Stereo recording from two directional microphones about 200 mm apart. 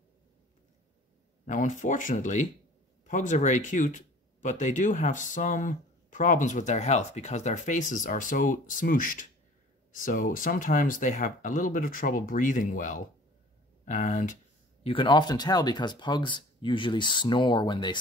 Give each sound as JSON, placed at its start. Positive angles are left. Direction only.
{"t": 1.4, "sound": "speech", "side_deg": 40}
{"t": 13.8, "sound": "a sound", "side_deg": 40}
{"t": 14.9, "sound": "speech", "side_deg": 25}